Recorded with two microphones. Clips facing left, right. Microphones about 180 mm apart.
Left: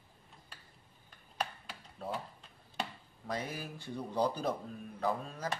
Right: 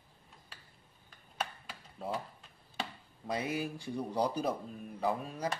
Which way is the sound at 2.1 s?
Centre (ahead or behind).